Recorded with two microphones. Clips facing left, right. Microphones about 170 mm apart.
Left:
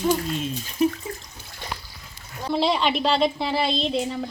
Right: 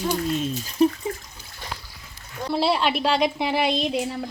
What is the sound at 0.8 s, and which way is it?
Water, 35° right (ahead or behind).